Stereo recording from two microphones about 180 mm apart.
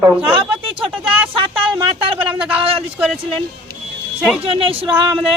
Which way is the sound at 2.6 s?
30° right (ahead or behind).